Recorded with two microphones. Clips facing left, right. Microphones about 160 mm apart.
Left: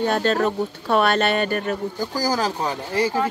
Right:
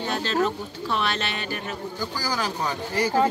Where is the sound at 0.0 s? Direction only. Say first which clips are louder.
Left 5 dB; 50° left (ahead or behind).